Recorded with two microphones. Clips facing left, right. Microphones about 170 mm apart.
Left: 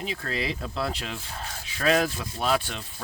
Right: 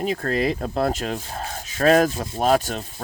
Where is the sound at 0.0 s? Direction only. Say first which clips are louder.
Right 9 dB; 45° right (ahead or behind).